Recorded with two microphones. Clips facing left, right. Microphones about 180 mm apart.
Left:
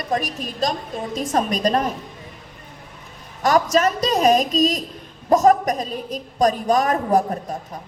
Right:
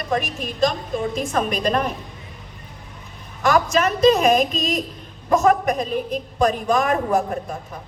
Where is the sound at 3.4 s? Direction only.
40° left (ahead or behind).